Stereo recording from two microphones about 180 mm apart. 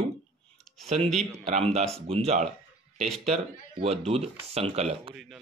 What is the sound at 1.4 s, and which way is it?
Speech, 35° right (ahead or behind).